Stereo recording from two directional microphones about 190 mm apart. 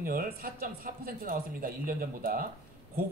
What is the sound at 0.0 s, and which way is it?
Speech, 50° right (ahead or behind).